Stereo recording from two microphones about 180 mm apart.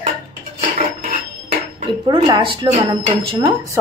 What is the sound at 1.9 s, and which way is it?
Speech, 25° right (ahead or behind).